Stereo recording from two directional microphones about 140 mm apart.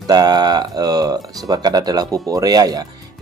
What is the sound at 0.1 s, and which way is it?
A man's voice, 30° right (ahead or behind).